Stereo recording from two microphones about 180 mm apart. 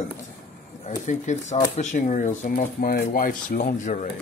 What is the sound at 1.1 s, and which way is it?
Speech, 40° left (ahead or behind).